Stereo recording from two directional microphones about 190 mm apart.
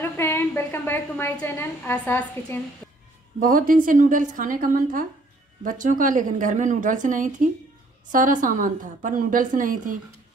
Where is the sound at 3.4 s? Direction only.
45° right (ahead or behind).